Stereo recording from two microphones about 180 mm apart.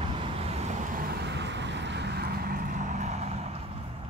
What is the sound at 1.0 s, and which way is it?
Vehicle, 60° right (ahead or behind).